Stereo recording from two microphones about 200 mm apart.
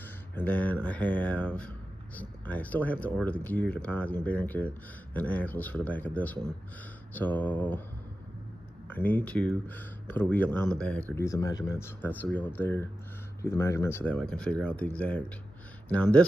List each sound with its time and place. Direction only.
0.4 s speech: 10° left (ahead or behind)
8.8 s speech: 10° left (ahead or behind)
11.1 s speech: 15° left (ahead or behind)